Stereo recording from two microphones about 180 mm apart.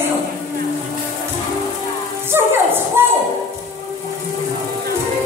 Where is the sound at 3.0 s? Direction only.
15° right (ahead or behind).